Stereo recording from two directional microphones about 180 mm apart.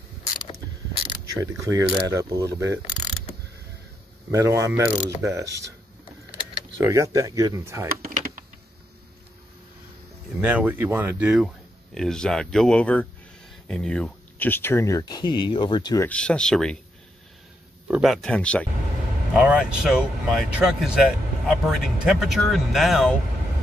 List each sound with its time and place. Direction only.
1.0 s speech: 20° right (ahead or behind)
4.3 s speech: 15° right (ahead or behind)
6.8 s speech: 15° right (ahead or behind)
10.4 s speech: 10° right (ahead or behind); by 16.1 s 20° left (ahead or behind)
16.1 s speech: 5° left (ahead or behind)
17.8 s speech: 5° right (ahead or behind)